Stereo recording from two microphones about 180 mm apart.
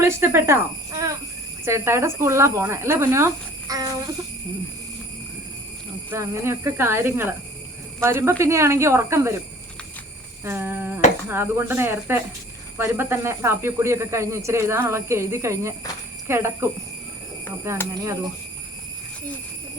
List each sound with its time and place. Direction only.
0.0 s speech: 15° right (ahead or behind)
6.1 s speech: 15° right (ahead or behind)
10.4 s speech: 10° right (ahead or behind)
17.7 s speech: 15° right (ahead or behind)